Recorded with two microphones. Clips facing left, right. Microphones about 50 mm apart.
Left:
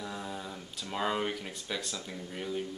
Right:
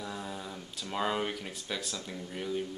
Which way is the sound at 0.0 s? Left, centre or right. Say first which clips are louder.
Even; centre.